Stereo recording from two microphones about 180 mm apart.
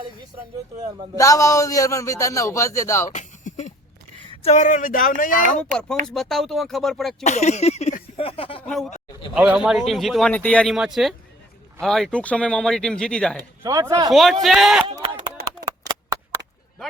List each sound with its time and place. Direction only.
1.1 s a man's voice: 20° left (ahead or behind)
3.1 s a sound: 40° left (ahead or behind)
4.3 s speech: 40° left (ahead or behind)
6.1 s speech: centre (ahead or behind)
7.3 s speech: 40° left (ahead or behind)
8.6 s speech: centre (ahead or behind)
13.6 s speech: 15° right (ahead or behind)
14.1 s speech: centre (ahead or behind)